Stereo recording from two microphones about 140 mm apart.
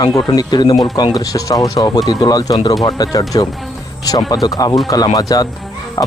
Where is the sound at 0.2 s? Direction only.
30° left (ahead or behind).